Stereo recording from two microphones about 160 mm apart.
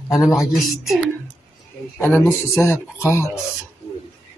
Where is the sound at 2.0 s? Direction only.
15° left (ahead or behind).